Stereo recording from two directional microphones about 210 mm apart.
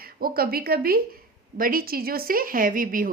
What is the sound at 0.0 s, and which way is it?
A woman's voice, 45° right (ahead or behind).